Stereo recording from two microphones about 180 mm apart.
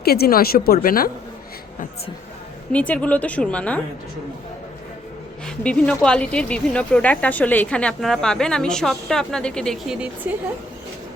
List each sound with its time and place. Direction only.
0.0 s a woman's voice: 60° left (ahead or behind)
2.7 s speech: 5° left (ahead or behind)
5.5 s speech: 5° left (ahead or behind)